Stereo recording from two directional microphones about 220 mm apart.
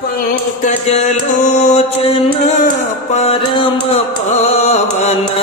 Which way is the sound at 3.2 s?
25° left (ahead or behind).